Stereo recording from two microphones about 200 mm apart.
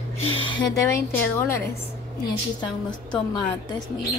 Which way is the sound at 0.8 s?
15° left (ahead or behind).